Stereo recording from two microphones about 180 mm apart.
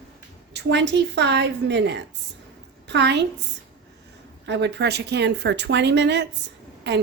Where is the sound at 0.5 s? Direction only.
75° right (ahead or behind).